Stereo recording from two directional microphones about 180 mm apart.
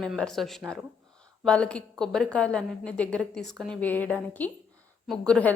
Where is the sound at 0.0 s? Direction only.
5° left (ahead or behind).